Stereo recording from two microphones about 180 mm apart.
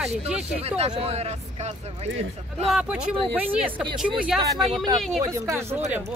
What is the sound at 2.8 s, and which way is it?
Speech, 5° right (ahead or behind).